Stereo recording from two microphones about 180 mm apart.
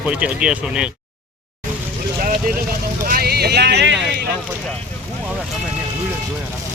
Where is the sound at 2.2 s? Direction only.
50° right (ahead or behind).